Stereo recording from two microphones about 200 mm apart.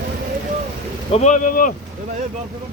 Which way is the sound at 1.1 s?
35° left (ahead or behind).